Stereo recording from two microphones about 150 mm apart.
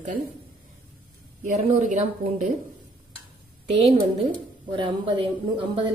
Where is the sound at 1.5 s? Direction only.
45° right (ahead or behind).